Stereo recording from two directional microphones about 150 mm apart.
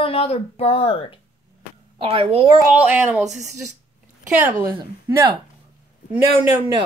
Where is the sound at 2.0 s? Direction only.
35° right (ahead or behind).